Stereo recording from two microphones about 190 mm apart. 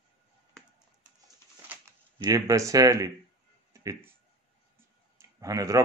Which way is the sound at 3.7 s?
15° right (ahead or behind).